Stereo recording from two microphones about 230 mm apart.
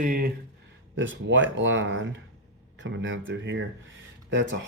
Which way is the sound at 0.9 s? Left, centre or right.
Right.